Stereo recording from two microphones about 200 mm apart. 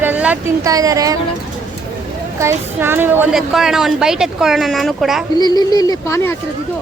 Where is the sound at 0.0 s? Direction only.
10° right (ahead or behind).